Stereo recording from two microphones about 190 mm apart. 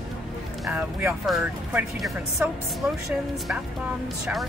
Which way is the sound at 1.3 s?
Centre (ahead or behind).